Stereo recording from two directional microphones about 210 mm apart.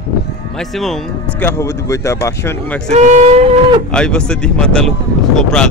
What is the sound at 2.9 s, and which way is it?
Train, 30° right (ahead or behind).